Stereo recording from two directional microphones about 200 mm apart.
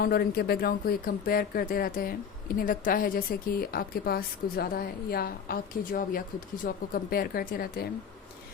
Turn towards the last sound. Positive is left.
turn(degrees=50)  # may be behind; listen again after turning